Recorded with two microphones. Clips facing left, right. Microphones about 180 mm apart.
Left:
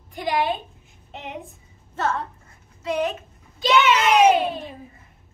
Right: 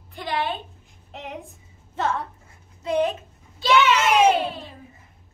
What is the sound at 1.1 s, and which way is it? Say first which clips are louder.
Speech: left 1 dB; centre (ahead or behind).